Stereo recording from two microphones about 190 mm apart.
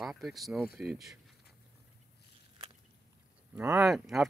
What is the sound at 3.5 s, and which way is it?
Speech, 10° right (ahead or behind).